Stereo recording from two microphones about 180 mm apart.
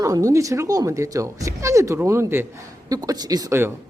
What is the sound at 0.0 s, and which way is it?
A woman's voice, 20° right (ahead or behind).